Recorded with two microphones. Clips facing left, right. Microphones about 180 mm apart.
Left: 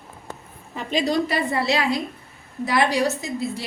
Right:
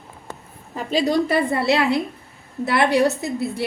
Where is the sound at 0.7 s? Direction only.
50° right (ahead or behind).